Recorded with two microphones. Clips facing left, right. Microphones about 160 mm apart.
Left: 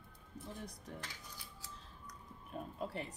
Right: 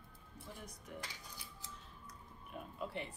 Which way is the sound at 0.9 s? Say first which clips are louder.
Right 3 dB; 30° left (ahead or behind).